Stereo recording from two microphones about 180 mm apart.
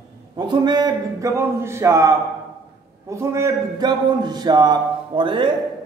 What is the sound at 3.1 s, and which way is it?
Speech, 15° right (ahead or behind).